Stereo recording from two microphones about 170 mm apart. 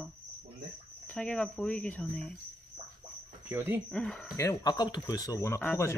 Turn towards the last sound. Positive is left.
turn(degrees=15)  # may be behind; listen again after turning